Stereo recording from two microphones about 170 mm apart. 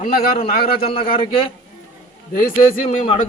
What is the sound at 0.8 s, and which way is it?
Speech, 35° left (ahead or behind).